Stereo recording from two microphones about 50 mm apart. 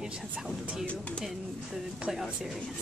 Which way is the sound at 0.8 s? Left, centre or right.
Left.